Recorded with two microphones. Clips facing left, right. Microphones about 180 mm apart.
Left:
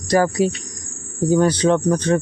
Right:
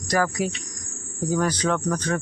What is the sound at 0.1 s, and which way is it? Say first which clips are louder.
Speech: left 7 dB; 30° left (ahead or behind).